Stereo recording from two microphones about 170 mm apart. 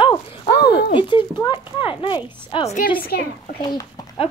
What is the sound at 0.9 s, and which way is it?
Speech, 30° left (ahead or behind).